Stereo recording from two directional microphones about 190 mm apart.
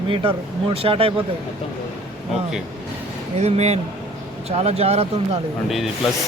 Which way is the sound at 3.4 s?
35° right (ahead or behind).